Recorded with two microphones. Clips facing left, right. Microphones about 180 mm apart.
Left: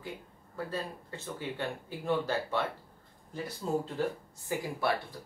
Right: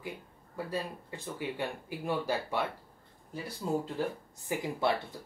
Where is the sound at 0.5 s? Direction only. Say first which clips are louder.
Right 1 dB; 10° right (ahead or behind).